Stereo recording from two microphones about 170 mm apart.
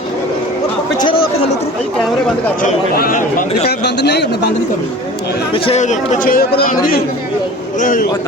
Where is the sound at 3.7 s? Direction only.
75° left (ahead or behind).